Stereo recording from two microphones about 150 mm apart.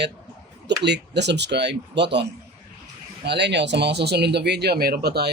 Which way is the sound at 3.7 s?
90° right.